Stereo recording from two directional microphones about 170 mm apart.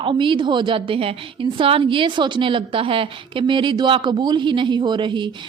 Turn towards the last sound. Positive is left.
turn(degrees=-30)  # may be behind; listen again after turning